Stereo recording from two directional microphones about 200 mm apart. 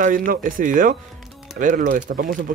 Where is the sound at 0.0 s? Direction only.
45° right (ahead or behind).